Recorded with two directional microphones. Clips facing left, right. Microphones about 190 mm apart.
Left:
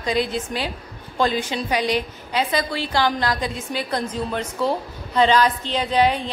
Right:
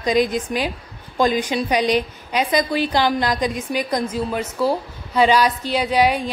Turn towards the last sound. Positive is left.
turn(degrees=-10)  # may be behind; listen again after turning